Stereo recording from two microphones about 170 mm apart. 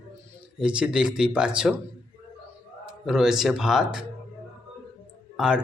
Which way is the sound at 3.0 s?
5° right (ahead or behind).